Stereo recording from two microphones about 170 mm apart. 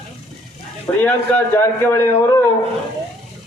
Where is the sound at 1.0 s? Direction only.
15° left (ahead or behind).